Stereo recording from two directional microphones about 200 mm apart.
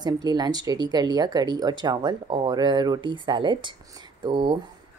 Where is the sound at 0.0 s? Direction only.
20° right (ahead or behind).